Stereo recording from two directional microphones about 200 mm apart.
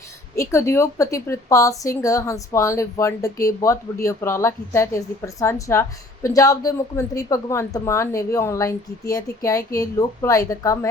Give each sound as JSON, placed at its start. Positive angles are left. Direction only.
{"t": 0.3, "sound": "a woman's voice", "side_deg": 15}